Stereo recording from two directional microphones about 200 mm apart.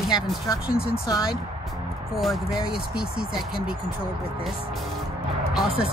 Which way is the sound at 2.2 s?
Centre (ahead or behind).